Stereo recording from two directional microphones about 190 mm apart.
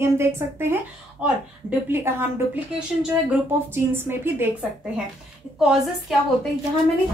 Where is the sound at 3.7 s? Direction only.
10° right (ahead or behind).